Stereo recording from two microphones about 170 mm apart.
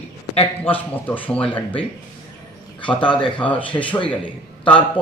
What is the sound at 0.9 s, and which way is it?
Speech, 10° left (ahead or behind).